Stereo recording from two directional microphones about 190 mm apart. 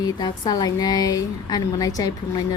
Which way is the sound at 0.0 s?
20° left (ahead or behind).